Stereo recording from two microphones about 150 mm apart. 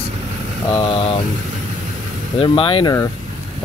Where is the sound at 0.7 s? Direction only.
35° left (ahead or behind).